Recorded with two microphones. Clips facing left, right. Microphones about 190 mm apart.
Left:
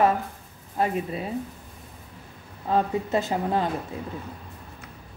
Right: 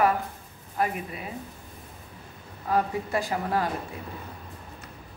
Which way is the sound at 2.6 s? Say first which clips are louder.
Left 2 dB; 25° left (ahead or behind).